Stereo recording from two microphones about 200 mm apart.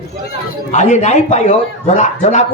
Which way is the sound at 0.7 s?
35° left (ahead or behind).